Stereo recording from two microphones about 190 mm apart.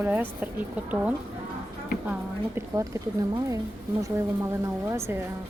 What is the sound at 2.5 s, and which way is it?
Speech, 15° right (ahead or behind).